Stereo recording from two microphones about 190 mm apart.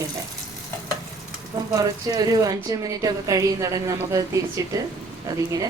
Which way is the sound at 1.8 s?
20° right (ahead or behind).